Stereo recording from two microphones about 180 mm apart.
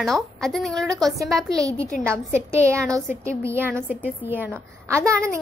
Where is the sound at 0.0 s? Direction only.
Centre (ahead or behind).